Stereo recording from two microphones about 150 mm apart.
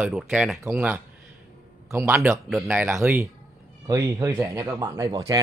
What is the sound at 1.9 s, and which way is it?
Speech, 15° right (ahead or behind).